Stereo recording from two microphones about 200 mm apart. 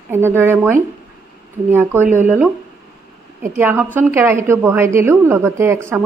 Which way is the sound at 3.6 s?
10° right (ahead or behind).